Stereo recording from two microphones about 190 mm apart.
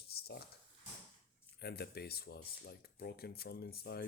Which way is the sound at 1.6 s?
55° left (ahead or behind).